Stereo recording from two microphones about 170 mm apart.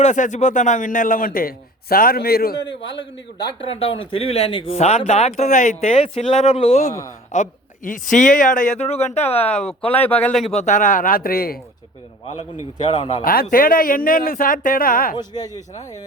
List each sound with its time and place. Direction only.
0.0 s a man's voice: 45° left (ahead or behind); by 2.6 s 65° left (ahead or behind)
2.8 s a man's voice: 90° left
3.4 s a man's voice: 35° left (ahead or behind); by 8.9 s 50° left (ahead or behind)
8.9 s speech: 40° left (ahead or behind)
9.4 s speech: 5° left (ahead or behind)
10.4 s a man's voice: 40° left (ahead or behind); by 11.5 s 60° left (ahead or behind)
12.8 s speech: 30° left (ahead or behind)
13.2 s a man's voice: 60° left (ahead or behind)
15.2 s speech: 25° left (ahead or behind)